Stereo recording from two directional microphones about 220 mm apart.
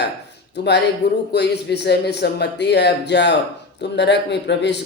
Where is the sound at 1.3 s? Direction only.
50° left (ahead or behind).